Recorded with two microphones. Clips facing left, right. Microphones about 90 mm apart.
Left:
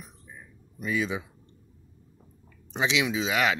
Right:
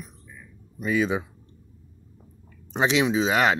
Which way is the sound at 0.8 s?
55° right (ahead or behind).